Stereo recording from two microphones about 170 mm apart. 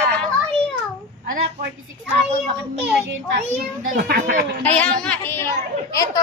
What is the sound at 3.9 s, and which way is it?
Speech, 70° right (ahead or behind).